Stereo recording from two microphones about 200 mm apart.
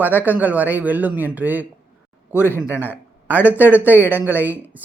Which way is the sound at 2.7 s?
10° right (ahead or behind).